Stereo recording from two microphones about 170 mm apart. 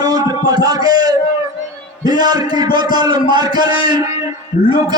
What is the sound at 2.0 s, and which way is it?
A man's voice, 25° right (ahead or behind).